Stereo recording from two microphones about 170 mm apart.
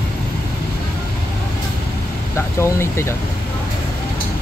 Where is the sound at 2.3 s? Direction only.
15° left (ahead or behind).